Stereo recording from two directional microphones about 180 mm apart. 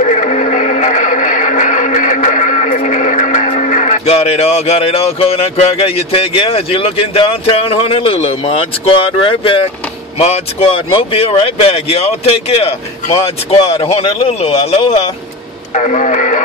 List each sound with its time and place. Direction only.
0.0 s music: 40° left (ahead or behind)
10.1 s speech: 35° left (ahead or behind)